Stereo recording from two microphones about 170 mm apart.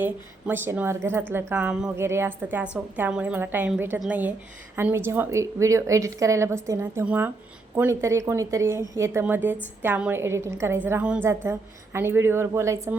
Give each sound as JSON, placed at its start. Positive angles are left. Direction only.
{"t": 0.0, "sound": "a woman's voice", "side_deg": -10}